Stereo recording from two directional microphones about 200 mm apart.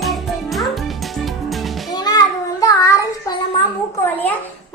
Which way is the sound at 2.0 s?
20° left (ahead or behind).